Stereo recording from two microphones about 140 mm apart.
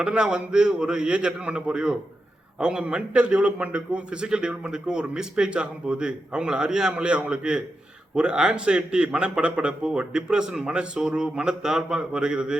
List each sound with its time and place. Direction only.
0.0 s a man's voice: 5° right (ahead or behind)